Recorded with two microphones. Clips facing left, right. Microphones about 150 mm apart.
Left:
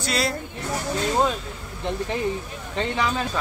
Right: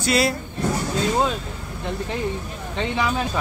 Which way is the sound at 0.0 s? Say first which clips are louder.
Right 5 dB; 5° right (ahead or behind).